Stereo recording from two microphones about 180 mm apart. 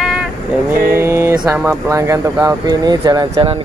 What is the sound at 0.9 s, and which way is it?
Speech, 15° right (ahead or behind).